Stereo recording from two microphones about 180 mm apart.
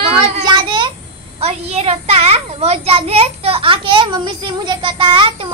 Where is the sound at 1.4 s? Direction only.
35° right (ahead or behind).